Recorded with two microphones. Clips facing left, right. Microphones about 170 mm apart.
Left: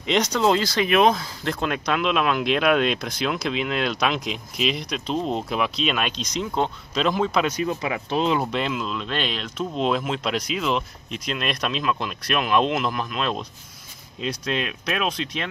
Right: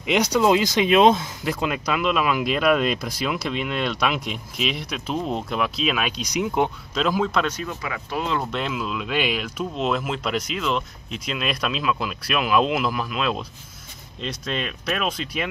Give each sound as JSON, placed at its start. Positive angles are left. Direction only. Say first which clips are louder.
{"t": 0.0, "sound": "speech", "louder": "right 1 dB", "side_deg": -10}
{"t": 1.4, "sound": "speech", "louder": "right 1 dB", "side_deg": -10}
{"t": 6.9, "sound": "speech", "louder": "even", "side_deg": 0}
{"t": 7.4, "sound": "speech", "louder": "left 4 dB", "side_deg": 15}
{"t": 8.5, "sound": "speech", "louder": "left 1 dB", "side_deg": 0}